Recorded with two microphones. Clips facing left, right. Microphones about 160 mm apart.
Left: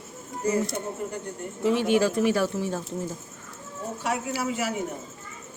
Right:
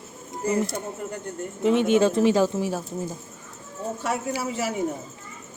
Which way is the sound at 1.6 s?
20° right (ahead or behind).